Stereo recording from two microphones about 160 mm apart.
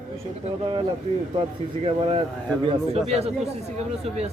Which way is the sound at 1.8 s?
35° right (ahead or behind).